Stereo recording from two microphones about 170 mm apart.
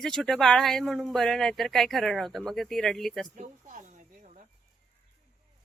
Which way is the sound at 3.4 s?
45° right (ahead or behind).